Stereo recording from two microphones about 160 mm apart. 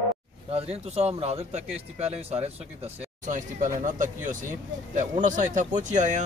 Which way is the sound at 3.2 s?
50° right (ahead or behind).